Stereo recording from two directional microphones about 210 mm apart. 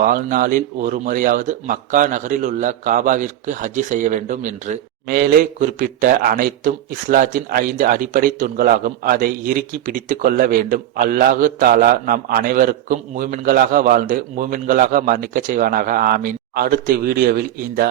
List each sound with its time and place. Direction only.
0.0 s a man's voice: 40° right (ahead or behind)